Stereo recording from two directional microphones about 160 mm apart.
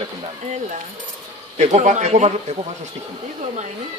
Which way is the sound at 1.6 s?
45° right (ahead or behind).